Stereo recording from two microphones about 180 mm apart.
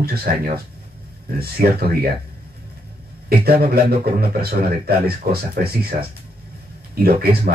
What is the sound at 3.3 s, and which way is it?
Speech, 60° right (ahead or behind).